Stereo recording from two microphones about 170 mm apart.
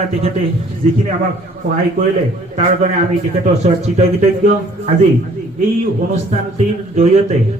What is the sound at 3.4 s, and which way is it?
Speech, 40° right (ahead or behind).